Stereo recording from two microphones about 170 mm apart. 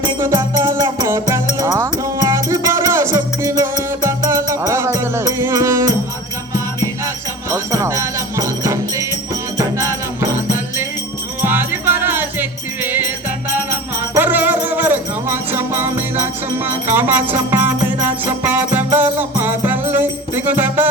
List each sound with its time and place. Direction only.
0.2 s music: 15° right (ahead or behind)
7.5 s music: 15° right (ahead or behind)
11.4 s music: 10° right (ahead or behind)
14.2 s music: 10° right (ahead or behind)